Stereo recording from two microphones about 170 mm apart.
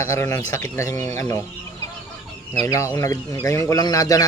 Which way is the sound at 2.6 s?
20° left (ahead or behind).